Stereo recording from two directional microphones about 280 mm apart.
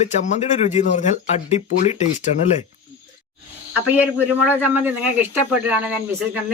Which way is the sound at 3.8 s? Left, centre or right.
Centre.